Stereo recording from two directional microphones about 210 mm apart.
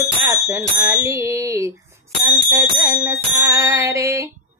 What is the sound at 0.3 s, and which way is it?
Music, 15° right (ahead or behind).